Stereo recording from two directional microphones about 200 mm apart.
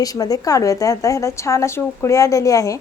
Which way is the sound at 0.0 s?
20° left (ahead or behind).